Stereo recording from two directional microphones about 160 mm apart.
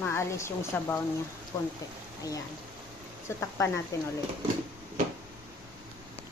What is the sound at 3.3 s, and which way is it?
Speech, 15° left (ahead or behind).